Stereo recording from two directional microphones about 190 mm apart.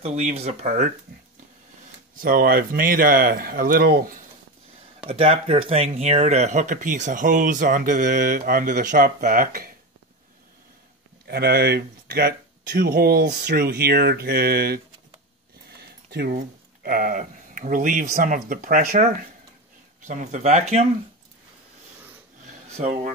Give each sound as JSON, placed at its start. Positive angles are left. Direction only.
{"t": 0.0, "sound": "speech", "side_deg": -35}
{"t": 2.1, "sound": "speech", "side_deg": -50}
{"t": 5.0, "sound": "speech", "side_deg": -30}
{"t": 11.2, "sound": "speech", "side_deg": -55}
{"t": 15.8, "sound": "speech", "side_deg": -55}
{"t": 22.5, "sound": "a sound", "side_deg": -40}